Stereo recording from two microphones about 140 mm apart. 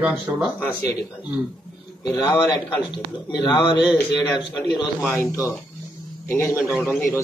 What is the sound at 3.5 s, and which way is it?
Speech, 35° left (ahead or behind).